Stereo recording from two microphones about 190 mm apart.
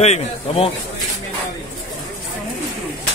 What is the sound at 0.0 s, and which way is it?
Speech, 35° left (ahead or behind).